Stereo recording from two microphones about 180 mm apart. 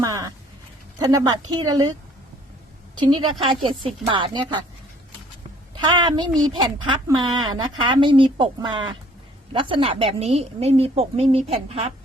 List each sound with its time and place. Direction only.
0.0 s a sound: 20° right (ahead or behind)
0.9 s speech: 20° right (ahead or behind)
3.1 s speech: 25° right (ahead or behind)
5.7 s a woman's voice: 25° right (ahead or behind)